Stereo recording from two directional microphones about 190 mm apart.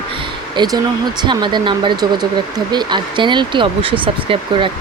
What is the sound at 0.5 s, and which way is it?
Speech, 20° right (ahead or behind).